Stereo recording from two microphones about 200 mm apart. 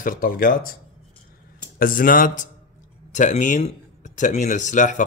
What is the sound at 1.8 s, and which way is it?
Speech, 45° left (ahead or behind).